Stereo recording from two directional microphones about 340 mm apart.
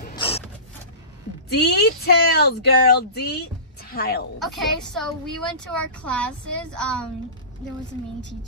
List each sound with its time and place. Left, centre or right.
0.1 s a sound: centre
1.5 s speech: left
4.4 s a woman's voice: centre